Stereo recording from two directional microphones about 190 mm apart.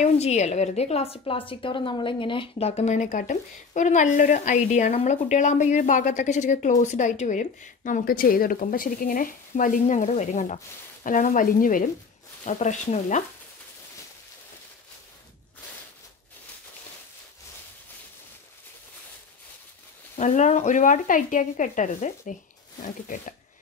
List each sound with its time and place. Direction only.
0.0 s a woman's voice: 35° left (ahead or behind)
11.1 s sizzle: 45° left (ahead or behind)
12.4 s a woman's voice: 40° left (ahead or behind)
20.2 s a woman's voice: 40° left (ahead or behind)
22.8 s sizzle: 45° left (ahead or behind)